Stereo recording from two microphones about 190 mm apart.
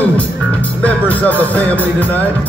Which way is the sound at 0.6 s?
10° left (ahead or behind).